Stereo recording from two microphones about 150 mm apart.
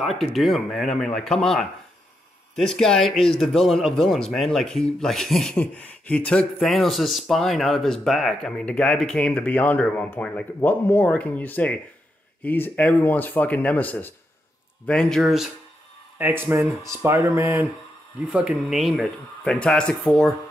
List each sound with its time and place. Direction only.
0.2 s speech: centre (ahead or behind)
16.2 s speech: 15° right (ahead or behind); by 20.3 s centre (ahead or behind)